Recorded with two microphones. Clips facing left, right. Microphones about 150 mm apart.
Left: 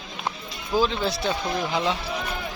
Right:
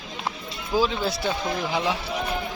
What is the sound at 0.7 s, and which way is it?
A man's voice, 5° right (ahead or behind).